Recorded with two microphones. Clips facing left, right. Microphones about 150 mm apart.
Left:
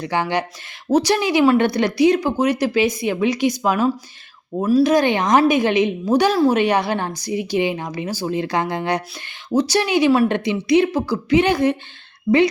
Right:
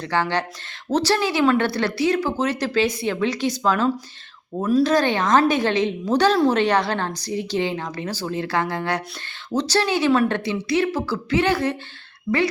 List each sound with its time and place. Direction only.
0.0 s speech: 15° left (ahead or behind)